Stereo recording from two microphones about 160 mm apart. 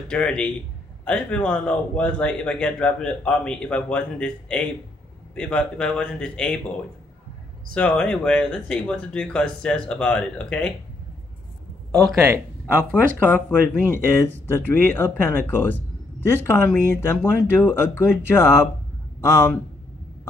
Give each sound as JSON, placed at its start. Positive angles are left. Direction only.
{"t": 0.1, "sound": "a man's voice", "side_deg": 5}
{"t": 7.7, "sound": "a man's voice", "side_deg": 5}
{"t": 12.3, "sound": "speech", "side_deg": -10}
{"t": 13.2, "sound": "a man's voice", "side_deg": 10}